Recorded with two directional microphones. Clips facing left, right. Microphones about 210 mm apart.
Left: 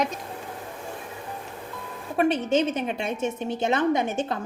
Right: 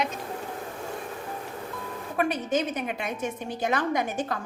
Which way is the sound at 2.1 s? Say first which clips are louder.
Left 4 dB; 25° left (ahead or behind).